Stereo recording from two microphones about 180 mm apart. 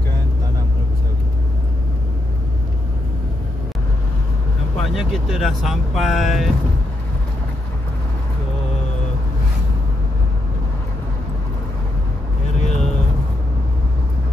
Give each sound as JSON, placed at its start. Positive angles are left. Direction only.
{"t": 4.9, "sound": "speech", "side_deg": 0}
{"t": 12.5, "sound": "vehicle", "side_deg": 40}